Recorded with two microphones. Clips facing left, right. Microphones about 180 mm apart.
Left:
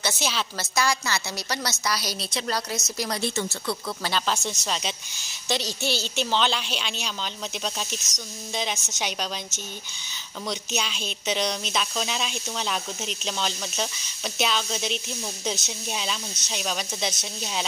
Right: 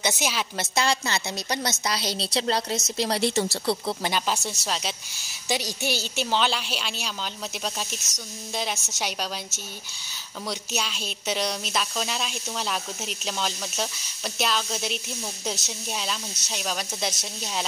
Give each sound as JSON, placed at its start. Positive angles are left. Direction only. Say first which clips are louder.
{"t": 0.0, "sound": "a woman's voice", "louder": "right 1 dB", "side_deg": -10}
{"t": 0.7, "sound": "a woman's voice", "louder": "even", "side_deg": -25}
{"t": 4.0, "sound": "a woman's voice", "louder": "even", "side_deg": -10}
{"t": 8.5, "sound": "speech", "louder": "even", "side_deg": -5}